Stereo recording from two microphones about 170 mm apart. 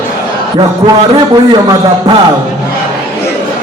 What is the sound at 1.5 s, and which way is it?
Speech, 25° right (ahead or behind).